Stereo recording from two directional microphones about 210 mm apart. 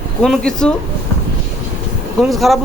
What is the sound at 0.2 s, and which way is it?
Speech, 5° left (ahead or behind).